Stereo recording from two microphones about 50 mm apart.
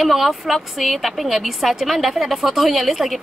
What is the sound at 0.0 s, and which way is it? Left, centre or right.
A woman's voice, centre.